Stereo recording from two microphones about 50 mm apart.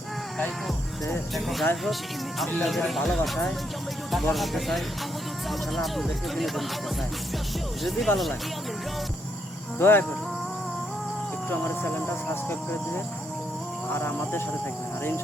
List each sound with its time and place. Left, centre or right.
1.3 s speech: centre
7.9 s speech: centre
9.7 s speech: left
11.4 s speech: left